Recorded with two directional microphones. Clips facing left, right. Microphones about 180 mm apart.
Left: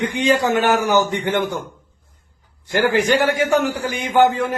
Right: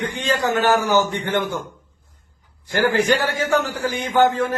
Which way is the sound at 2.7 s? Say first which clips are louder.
Left 1 dB; 15° left (ahead or behind).